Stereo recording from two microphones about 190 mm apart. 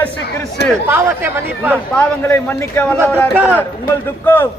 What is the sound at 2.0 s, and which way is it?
A man's voice, 10° left (ahead or behind).